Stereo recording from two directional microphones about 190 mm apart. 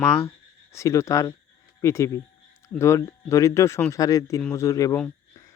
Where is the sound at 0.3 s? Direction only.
15° left (ahead or behind).